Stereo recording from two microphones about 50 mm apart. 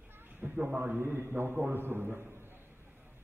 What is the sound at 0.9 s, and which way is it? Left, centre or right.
A man's voice, right.